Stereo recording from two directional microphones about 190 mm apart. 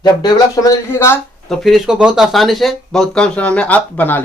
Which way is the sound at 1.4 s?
Centre (ahead or behind).